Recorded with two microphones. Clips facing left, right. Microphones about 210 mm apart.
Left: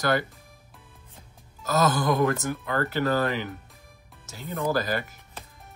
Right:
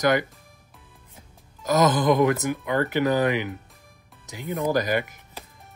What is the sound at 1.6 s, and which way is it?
Speech, 20° right (ahead or behind).